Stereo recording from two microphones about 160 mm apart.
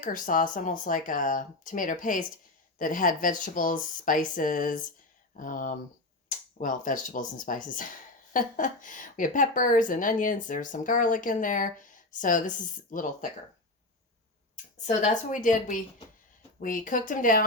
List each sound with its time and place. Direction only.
0.0 s speech: 55° left (ahead or behind)
14.8 s a woman's voice: 45° left (ahead or behind)